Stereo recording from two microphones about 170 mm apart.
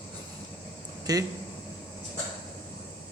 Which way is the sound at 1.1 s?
20° right (ahead or behind).